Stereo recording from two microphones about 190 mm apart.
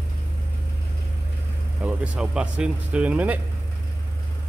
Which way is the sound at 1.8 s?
5° right (ahead or behind).